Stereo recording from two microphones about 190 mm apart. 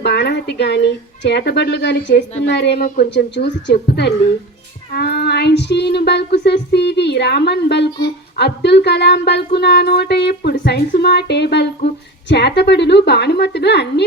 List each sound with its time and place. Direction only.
0.0 s speech: 60° left (ahead or behind)
3.1 s speech: 65° left (ahead or behind)